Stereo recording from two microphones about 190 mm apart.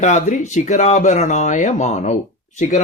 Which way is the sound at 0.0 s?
40° left (ahead or behind).